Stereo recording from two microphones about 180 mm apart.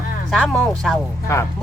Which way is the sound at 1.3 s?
15° left (ahead or behind).